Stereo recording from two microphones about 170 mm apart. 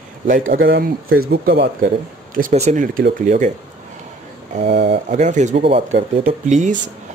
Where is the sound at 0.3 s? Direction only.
60° right (ahead or behind).